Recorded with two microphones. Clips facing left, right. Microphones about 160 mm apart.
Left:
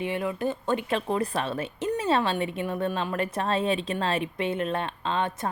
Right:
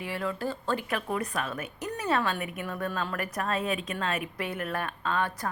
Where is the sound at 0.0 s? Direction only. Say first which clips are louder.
Left 4 dB; 20° left (ahead or behind).